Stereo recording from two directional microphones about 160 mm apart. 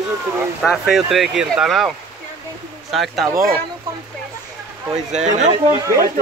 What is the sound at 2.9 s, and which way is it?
Speech, centre (ahead or behind).